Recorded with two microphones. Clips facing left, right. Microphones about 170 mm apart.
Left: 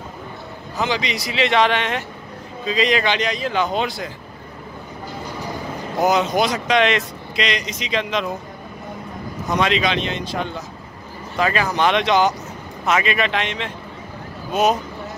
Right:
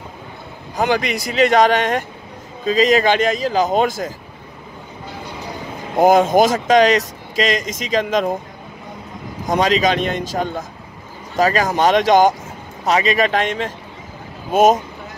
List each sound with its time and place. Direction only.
0.7 s speech: 55° right (ahead or behind)
5.9 s speech: 50° right (ahead or behind)
9.5 s a man's voice: 40° right (ahead or behind)